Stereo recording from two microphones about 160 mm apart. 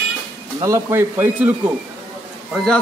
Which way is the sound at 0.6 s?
20° right (ahead or behind).